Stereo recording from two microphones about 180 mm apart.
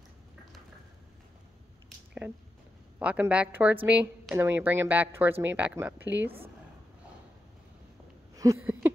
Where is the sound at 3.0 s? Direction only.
5° right (ahead or behind).